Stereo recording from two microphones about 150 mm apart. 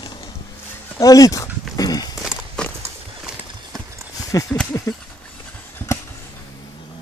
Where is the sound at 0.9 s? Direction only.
25° left (ahead or behind).